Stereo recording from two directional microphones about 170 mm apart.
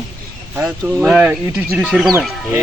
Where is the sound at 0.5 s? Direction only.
5° right (ahead or behind).